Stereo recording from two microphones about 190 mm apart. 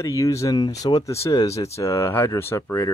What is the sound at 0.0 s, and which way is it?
Speech, 15° left (ahead or behind).